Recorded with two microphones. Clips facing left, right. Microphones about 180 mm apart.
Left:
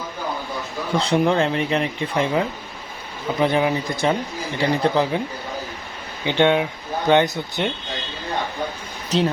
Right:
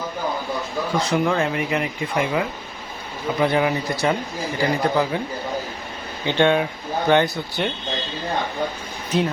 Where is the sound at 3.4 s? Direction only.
20° left (ahead or behind).